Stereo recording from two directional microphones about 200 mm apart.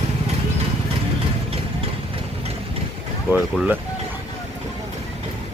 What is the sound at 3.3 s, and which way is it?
Speech, 10° right (ahead or behind).